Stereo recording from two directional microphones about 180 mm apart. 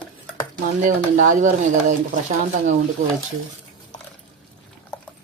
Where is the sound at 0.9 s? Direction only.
45° right (ahead or behind).